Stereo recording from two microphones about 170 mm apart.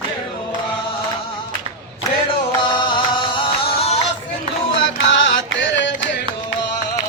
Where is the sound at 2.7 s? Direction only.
30° left (ahead or behind).